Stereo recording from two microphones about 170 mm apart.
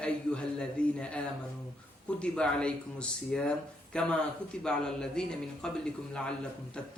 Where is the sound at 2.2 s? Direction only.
5° left (ahead or behind).